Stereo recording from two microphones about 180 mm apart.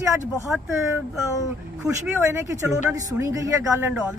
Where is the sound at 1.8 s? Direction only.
10° right (ahead or behind).